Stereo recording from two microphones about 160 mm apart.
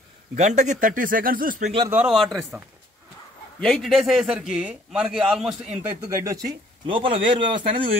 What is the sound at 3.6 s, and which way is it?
A man's voice, centre (ahead or behind).